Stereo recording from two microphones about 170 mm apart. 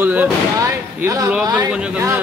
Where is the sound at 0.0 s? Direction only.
10° right (ahead or behind).